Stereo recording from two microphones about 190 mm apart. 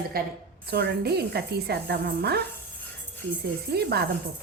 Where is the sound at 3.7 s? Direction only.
55° right (ahead or behind).